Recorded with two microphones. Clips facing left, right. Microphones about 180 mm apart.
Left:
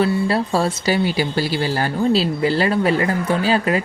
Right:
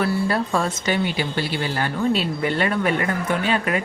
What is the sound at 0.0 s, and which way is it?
Speech, 30° left (ahead or behind).